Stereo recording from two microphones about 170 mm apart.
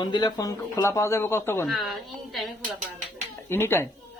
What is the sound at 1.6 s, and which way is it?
Speech, centre (ahead or behind).